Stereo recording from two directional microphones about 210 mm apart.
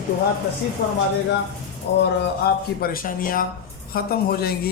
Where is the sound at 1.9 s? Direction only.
55° left (ahead or behind).